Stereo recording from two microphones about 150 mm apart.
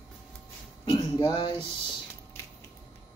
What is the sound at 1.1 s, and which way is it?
Speech, 30° left (ahead or behind).